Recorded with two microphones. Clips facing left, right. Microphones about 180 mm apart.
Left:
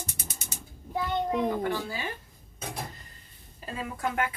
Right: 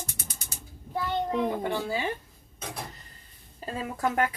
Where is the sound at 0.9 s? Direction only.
15° left (ahead or behind).